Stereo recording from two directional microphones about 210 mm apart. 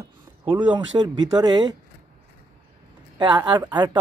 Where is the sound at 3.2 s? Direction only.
20° right (ahead or behind).